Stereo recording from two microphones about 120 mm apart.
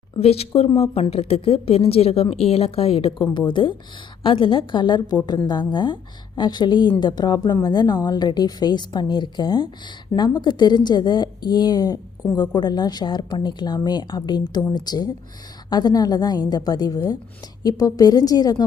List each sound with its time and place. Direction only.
0.2 s a woman's voice: 55° left (ahead or behind); by 18.6 s 35° left (ahead or behind)